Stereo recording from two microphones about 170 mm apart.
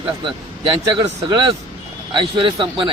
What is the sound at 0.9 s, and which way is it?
A man's voice, 25° right (ahead or behind).